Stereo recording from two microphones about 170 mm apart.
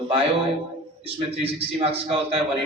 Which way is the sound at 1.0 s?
35° right (ahead or behind).